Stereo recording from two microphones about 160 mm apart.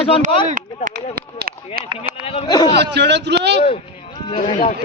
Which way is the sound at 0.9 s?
80° right.